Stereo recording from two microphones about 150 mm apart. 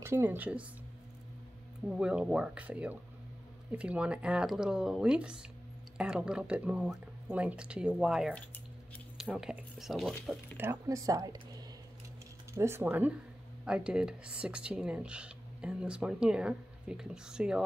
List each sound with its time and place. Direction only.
0.0 s speech: 15° right (ahead or behind)
1.9 s speech: 5° right (ahead or behind)
10.6 s speech: 20° right (ahead or behind)
12.5 s speech: 15° right (ahead or behind)